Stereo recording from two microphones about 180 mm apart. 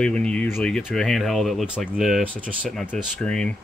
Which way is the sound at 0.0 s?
5° left (ahead or behind).